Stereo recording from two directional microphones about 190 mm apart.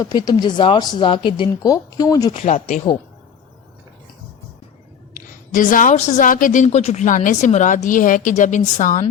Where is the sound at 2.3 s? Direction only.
40° left (ahead or behind).